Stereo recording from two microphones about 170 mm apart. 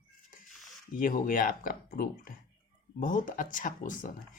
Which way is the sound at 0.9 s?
55° left (ahead or behind).